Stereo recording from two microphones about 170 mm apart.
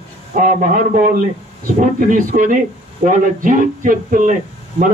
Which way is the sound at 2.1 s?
50° right (ahead or behind).